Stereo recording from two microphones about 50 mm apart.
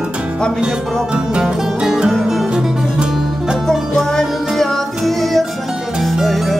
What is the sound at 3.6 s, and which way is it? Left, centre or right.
Music, centre.